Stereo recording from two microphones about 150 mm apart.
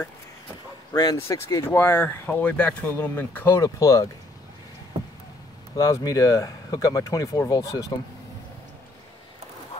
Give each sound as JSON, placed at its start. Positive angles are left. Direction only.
{"t": 0.9, "sound": "speech", "side_deg": 25}
{"t": 5.8, "sound": "speech", "side_deg": 20}